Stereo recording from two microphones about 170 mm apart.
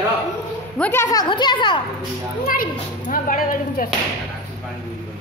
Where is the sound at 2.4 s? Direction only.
55° left (ahead or behind).